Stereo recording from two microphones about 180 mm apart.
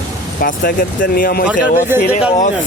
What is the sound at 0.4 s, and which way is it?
Speech, 50° left (ahead or behind).